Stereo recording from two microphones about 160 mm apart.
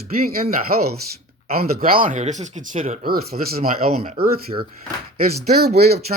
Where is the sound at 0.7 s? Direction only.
65° right (ahead or behind); by 3.1 s 50° right (ahead or behind).